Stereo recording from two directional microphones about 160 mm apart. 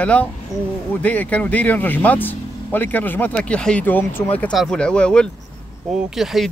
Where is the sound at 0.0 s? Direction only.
10° left (ahead or behind).